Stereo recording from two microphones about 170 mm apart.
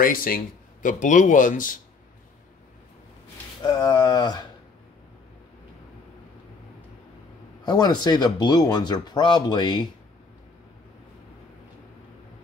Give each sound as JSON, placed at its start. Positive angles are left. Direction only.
{"t": 0.0, "sound": "speech", "side_deg": 55}
{"t": 3.6, "sound": "speech", "side_deg": 25}
{"t": 7.6, "sound": "speech", "side_deg": 25}